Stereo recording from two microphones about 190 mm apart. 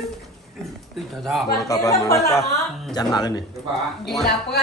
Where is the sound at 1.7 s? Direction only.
20° left (ahead or behind).